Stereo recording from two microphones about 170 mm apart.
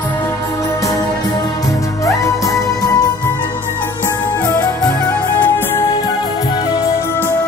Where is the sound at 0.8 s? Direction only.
20° left (ahead or behind).